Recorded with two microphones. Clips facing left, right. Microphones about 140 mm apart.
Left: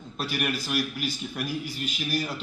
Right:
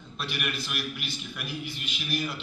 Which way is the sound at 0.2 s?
40° left (ahead or behind).